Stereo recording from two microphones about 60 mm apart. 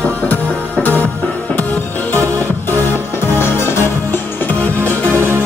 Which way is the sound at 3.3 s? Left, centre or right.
Left.